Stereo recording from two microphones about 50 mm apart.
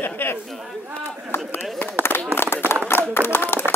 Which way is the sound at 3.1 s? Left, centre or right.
Left.